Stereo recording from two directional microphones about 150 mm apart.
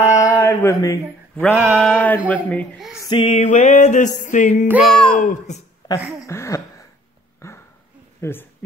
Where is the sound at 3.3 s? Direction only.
50° left (ahead or behind).